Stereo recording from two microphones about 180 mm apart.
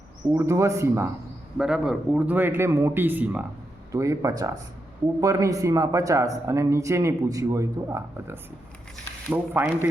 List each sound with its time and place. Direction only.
0.3 s speech: 15° right (ahead or behind)
1.5 s speech: 5° right (ahead or behind)